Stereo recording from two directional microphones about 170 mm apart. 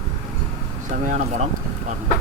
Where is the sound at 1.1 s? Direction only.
45° right (ahead or behind).